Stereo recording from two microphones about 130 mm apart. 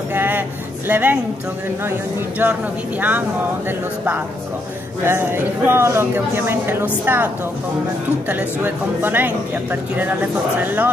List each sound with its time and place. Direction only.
0.1 s a sound: 15° right (ahead or behind)
0.8 s speech: 15° right (ahead or behind)
5.0 s speech: 20° right (ahead or behind)
8.3 s speech: 15° right (ahead or behind)